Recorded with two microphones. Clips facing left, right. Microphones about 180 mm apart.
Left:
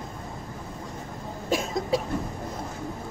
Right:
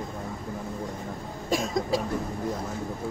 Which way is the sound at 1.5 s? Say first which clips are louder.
Even; centre (ahead or behind).